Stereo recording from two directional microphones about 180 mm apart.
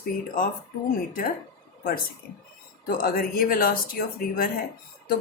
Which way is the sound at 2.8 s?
55° left (ahead or behind).